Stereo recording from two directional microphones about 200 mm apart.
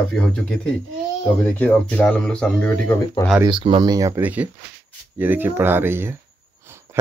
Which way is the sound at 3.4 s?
25° right (ahead or behind).